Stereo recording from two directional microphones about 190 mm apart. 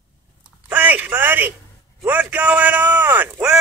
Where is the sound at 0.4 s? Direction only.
10° right (ahead or behind).